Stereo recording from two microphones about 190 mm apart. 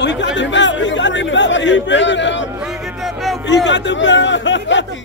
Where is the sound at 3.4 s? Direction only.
70° left (ahead or behind).